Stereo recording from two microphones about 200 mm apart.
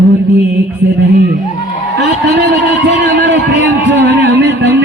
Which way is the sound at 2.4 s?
60° right (ahead or behind).